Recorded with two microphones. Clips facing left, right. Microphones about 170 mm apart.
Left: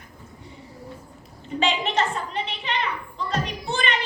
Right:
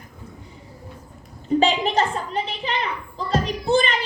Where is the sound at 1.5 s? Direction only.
35° right (ahead or behind).